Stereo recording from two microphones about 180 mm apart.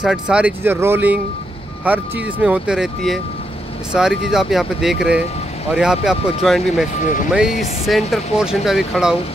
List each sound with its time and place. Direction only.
0.0 s speech: 5° right (ahead or behind)
7.0 s speech: 45° left (ahead or behind)
7.8 s speech: centre (ahead or behind)